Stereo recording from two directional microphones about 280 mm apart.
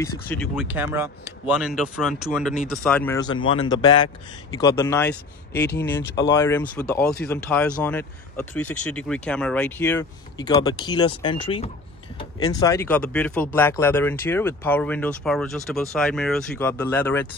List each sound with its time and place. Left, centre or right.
0.0 s speech: centre
5.5 s speech: left
5.8 s speech: centre